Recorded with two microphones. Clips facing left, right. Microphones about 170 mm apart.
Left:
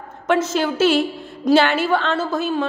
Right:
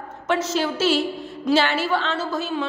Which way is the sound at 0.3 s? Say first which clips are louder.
Left 4 dB; 50° left (ahead or behind).